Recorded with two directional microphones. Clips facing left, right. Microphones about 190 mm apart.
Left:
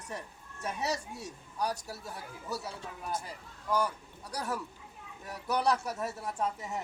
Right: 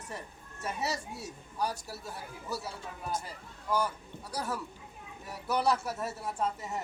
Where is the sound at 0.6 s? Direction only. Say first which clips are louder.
Left 1 dB; centre (ahead or behind).